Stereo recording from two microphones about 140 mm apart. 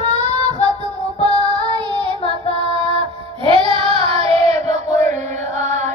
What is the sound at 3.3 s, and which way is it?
Child singing, 40° right (ahead or behind).